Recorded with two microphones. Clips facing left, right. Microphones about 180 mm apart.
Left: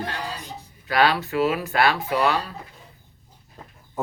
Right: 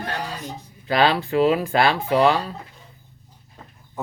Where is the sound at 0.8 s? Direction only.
25° right (ahead or behind).